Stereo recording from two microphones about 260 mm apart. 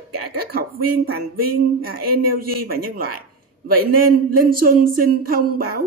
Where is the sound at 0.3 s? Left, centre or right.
Right.